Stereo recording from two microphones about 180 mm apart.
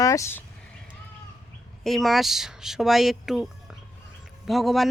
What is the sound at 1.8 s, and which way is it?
Speech, centre (ahead or behind).